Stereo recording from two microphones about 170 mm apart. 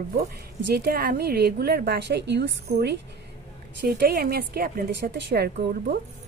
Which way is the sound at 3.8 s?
65° right (ahead or behind).